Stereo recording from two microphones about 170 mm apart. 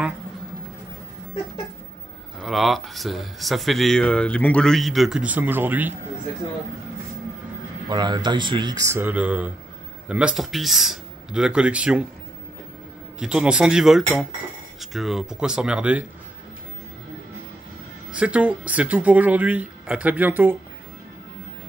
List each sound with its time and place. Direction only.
2.4 s speech: centre (ahead or behind)
7.9 s speech: 25° right (ahead or behind); by 12.1 s 5° right (ahead or behind)
13.2 s speech: 5° right (ahead or behind)
18.1 s speech: 5° right (ahead or behind)